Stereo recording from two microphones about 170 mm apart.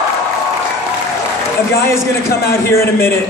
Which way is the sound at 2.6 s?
15° left (ahead or behind).